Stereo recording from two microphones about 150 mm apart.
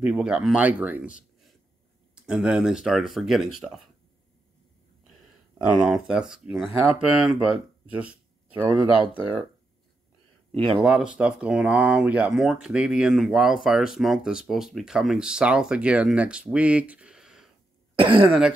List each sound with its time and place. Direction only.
0.0 s speech: 5° right (ahead or behind)
2.2 s speech: 5° right (ahead or behind)
5.8 s speech: 5° right (ahead or behind)
8.9 s speech: 35° left (ahead or behind)
10.5 s speech: 40° right (ahead or behind)
10.8 s speech: 5° right (ahead or behind)
17.9 s throat clearing: 35° right (ahead or behind)